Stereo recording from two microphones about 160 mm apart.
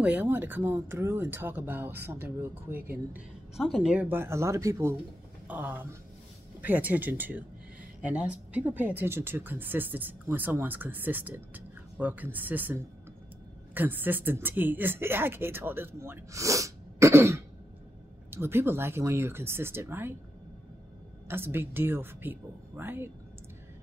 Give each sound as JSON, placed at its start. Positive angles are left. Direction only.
{"t": 0.0, "sound": "speech", "side_deg": -10}
{"t": 21.3, "sound": "speech", "side_deg": -15}